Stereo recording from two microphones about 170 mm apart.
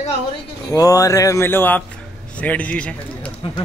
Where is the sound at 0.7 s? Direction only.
20° left (ahead or behind).